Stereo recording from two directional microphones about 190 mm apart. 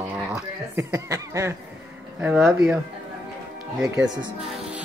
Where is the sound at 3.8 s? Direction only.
20° right (ahead or behind).